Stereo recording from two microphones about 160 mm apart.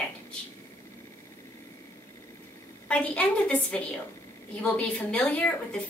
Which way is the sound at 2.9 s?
10° left (ahead or behind).